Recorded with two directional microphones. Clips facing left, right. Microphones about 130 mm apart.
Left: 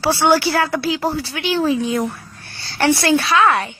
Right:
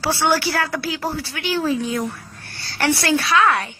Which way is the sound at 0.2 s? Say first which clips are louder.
Left 4 dB; 20° left (ahead or behind).